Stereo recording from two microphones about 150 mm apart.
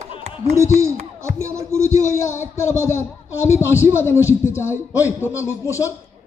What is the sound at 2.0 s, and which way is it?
Speech, 55° left (ahead or behind).